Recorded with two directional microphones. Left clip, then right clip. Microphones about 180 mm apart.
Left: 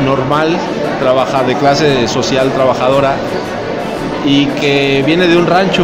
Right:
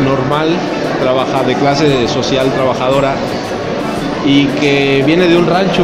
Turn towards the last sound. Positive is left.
turn(degrees=15)  # may be behind; listen again after turning